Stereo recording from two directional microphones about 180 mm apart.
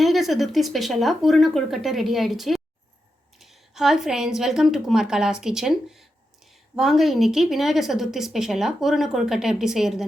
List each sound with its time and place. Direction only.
0.0 s a woman's voice: centre (ahead or behind)